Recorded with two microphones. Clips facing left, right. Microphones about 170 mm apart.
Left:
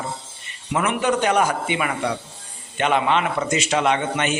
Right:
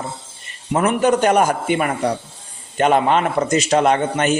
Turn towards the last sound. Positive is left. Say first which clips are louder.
# right 4 dB
turn(degrees=-40)  # may be behind; listen again after turning